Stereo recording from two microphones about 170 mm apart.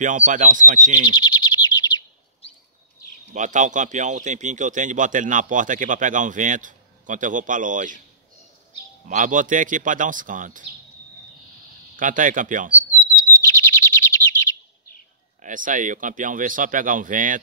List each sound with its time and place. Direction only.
0.0 s speech: 50° right (ahead or behind)
1.1 s bird: 25° left (ahead or behind)
3.3 s speech: 45° right (ahead or behind)
9.0 s speech: 50° right (ahead or behind)
12.0 s speech: 50° right (ahead or behind)
13.5 s chirp: 15° left (ahead or behind)
15.4 s speech: 50° right (ahead or behind)